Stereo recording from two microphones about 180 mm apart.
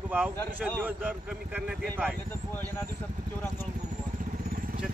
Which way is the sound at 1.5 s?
10° right (ahead or behind).